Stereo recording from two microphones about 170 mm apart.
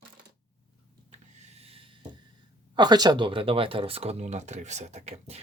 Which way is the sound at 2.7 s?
25° right (ahead or behind).